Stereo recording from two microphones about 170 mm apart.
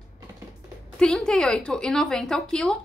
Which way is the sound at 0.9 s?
5° left (ahead or behind).